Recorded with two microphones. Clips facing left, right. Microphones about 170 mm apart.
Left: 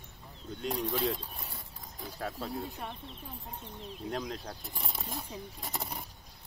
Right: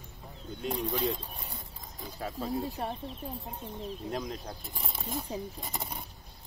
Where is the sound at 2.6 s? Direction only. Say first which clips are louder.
Right 6 dB; 35° right (ahead or behind).